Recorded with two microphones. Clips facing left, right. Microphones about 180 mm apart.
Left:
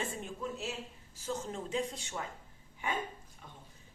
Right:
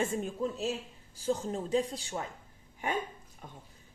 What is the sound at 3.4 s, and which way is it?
Speech, 45° right (ahead or behind).